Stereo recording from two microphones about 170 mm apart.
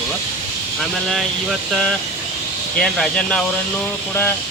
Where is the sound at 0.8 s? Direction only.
Centre (ahead or behind).